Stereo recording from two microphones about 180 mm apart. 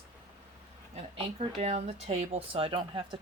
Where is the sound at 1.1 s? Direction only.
35° right (ahead or behind).